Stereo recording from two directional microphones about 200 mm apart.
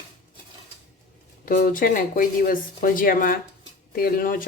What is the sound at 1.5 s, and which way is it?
A woman's voice, 40° left (ahead or behind).